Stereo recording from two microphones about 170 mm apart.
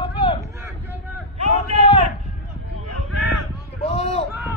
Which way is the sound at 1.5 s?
35° left (ahead or behind).